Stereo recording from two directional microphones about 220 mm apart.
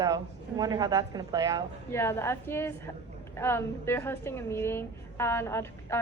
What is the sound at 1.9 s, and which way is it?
A woman's voice, 10° left (ahead or behind).